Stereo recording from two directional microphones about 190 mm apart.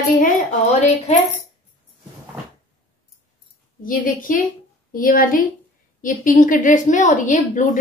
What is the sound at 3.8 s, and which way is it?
A woman's voice, 45° left (ahead or behind).